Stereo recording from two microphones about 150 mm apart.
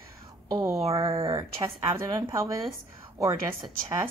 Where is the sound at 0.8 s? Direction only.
40° right (ahead or behind).